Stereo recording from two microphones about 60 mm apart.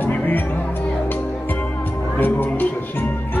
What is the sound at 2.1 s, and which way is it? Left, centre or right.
Music, left.